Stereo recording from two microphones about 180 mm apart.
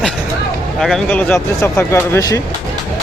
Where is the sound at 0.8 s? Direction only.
Centre (ahead or behind).